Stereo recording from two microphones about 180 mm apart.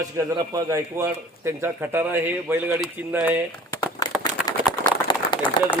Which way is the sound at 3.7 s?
20° left (ahead or behind).